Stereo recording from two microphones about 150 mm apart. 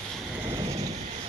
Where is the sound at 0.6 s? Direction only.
45° right (ahead or behind).